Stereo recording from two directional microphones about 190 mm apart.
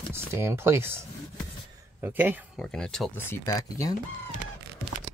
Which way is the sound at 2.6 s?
5° left (ahead or behind).